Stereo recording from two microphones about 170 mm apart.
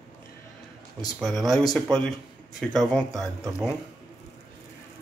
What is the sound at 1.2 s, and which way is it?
Speech, centre (ahead or behind).